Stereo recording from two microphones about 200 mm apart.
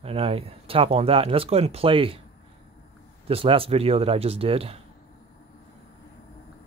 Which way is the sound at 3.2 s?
30° right (ahead or behind).